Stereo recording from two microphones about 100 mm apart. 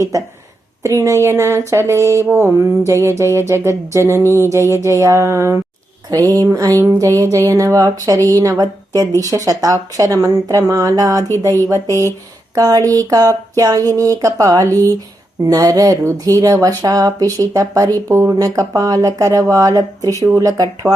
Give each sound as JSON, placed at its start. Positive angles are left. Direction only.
{"t": 0.8, "sound": "speech", "side_deg": -30}
{"t": 6.1, "sound": "speech", "side_deg": -40}